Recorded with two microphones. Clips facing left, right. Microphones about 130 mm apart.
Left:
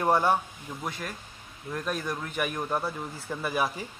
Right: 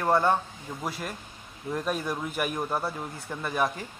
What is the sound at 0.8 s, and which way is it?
A man's voice, 5° right (ahead or behind).